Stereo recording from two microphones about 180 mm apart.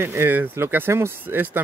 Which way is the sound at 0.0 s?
15° right (ahead or behind).